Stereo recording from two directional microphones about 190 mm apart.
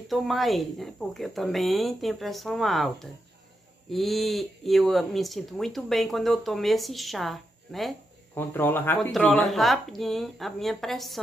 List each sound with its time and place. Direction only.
0.1 s speech: centre (ahead or behind)